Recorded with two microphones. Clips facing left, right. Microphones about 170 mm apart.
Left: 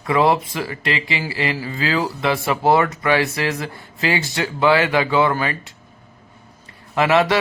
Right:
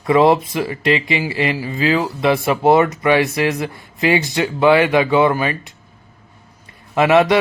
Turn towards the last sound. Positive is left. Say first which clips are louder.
# right 4 dB
turn(degrees=-20)  # may be behind; listen again after turning